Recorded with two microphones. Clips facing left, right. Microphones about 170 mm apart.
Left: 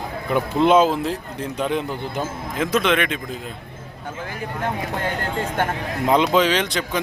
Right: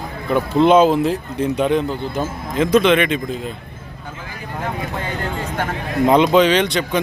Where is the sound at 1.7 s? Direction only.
15° left (ahead or behind).